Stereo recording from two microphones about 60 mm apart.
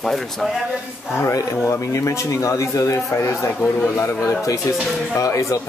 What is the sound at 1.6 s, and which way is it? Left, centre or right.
Speech, left.